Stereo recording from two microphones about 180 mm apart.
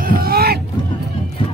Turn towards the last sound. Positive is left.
turn(degrees=-60)  # may be behind; listen again after turning